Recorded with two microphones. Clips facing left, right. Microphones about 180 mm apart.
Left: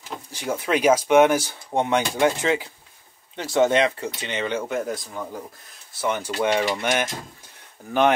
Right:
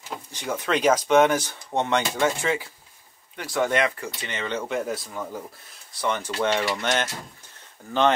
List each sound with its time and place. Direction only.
0.3 s speech: 10° left (ahead or behind)
6.0 s speech: 10° left (ahead or behind)